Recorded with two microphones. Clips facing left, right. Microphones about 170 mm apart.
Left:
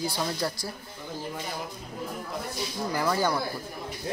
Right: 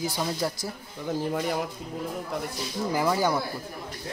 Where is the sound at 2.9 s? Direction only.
10° right (ahead or behind).